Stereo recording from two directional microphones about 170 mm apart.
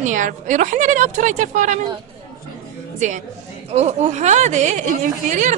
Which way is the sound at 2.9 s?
45° right (ahead or behind).